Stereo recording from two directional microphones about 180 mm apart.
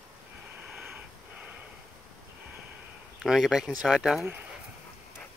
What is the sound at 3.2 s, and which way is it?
Speech, centre (ahead or behind).